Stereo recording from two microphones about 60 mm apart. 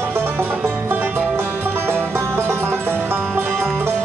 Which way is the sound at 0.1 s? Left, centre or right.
Right.